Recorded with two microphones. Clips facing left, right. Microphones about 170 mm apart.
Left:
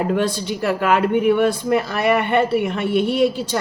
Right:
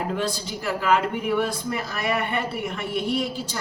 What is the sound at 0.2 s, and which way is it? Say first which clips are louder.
A woman's voice: left 7 dB; 60° left (ahead or behind).